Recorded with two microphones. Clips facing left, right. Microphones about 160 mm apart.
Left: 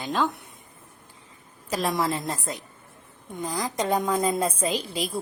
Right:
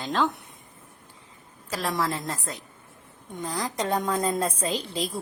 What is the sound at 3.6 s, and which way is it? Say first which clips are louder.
A woman's voice: left 2 dB; 10° left (ahead or behind).